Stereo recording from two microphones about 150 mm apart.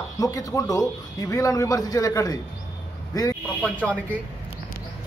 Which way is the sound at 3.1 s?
25° left (ahead or behind).